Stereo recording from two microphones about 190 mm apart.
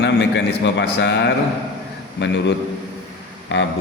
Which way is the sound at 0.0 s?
65° left (ahead or behind).